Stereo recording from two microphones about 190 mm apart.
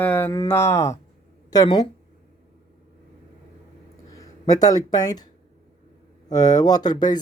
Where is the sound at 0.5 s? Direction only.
15° left (ahead or behind).